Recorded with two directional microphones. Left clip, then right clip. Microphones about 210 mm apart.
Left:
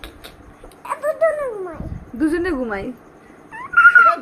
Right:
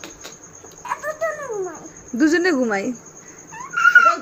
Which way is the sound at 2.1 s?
20° right (ahead or behind).